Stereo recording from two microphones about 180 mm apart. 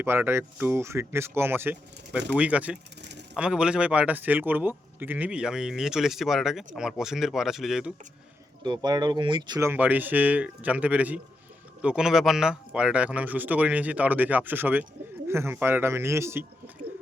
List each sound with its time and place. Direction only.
0.0 s a man's voice: 15° right (ahead or behind)
8.6 s speech: 25° right (ahead or behind)
9.6 s speech: 10° right (ahead or behind)